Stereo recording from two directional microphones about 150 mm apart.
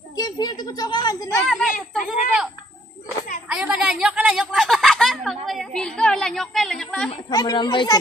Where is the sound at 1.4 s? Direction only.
Centre (ahead or behind).